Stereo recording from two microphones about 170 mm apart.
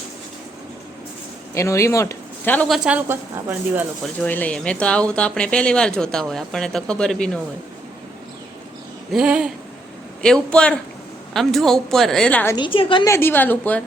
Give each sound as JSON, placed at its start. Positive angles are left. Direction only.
{"t": 1.5, "sound": "speech", "side_deg": 15}
{"t": 2.6, "sound": "speech", "side_deg": -5}
{"t": 4.2, "sound": "speech", "side_deg": 10}
{"t": 9.1, "sound": "speech", "side_deg": -5}
{"t": 12.5, "sound": "a woman's voice", "side_deg": 30}
{"t": 13.1, "sound": "speech", "side_deg": 15}